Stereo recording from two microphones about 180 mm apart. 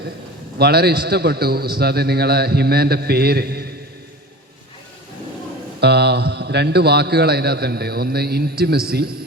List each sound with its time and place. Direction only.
0.6 s a man's voice: 60° right (ahead or behind)
5.8 s a man's voice: 65° right (ahead or behind)